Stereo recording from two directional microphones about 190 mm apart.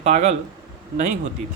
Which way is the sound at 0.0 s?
35° right (ahead or behind).